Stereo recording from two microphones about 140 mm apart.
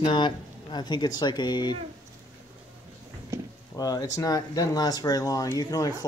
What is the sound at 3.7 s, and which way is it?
Speech, 25° left (ahead or behind).